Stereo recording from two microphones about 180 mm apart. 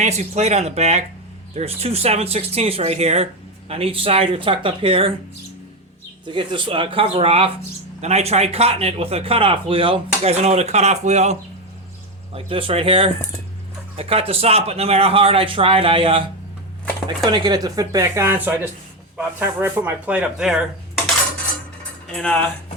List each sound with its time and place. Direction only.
0.0 s speech: 40° right (ahead or behind)
6.2 s speech: 25° right (ahead or behind)
17.3 s speech: 25° right (ahead or behind); by 21.0 s 5° right (ahead or behind)
22.1 s speech: 5° left (ahead or behind)